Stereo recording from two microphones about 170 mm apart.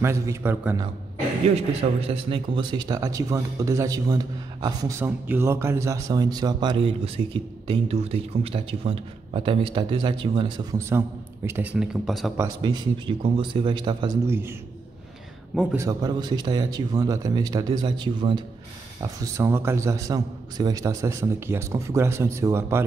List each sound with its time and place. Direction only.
0.0 s a man's voice: 15° right (ahead or behind)
1.8 s speech: 35° right (ahead or behind); by 12.3 s centre (ahead or behind)
12.4 s speech: 25° right (ahead or behind)
14.2 s a man's voice: 15° right (ahead or behind)
15.7 s a man's voice: 20° right (ahead or behind)